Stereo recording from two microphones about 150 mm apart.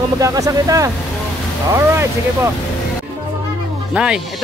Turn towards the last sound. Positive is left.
turn(degrees=-5)  # may be behind; listen again after turning